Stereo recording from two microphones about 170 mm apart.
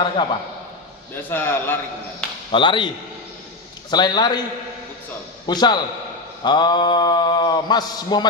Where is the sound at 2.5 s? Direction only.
30° left (ahead or behind).